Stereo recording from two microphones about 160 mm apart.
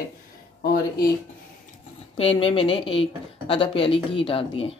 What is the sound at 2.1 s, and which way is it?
Speech, 35° left (ahead or behind).